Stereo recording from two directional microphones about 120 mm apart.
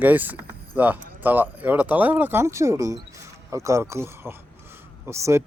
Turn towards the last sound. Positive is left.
turn(degrees=-25)  # may be behind; listen again after turning